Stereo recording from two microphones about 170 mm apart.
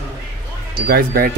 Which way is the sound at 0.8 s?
65° right (ahead or behind).